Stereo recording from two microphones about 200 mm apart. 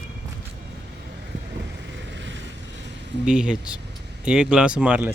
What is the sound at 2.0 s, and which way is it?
Vehicle, 65° right (ahead or behind).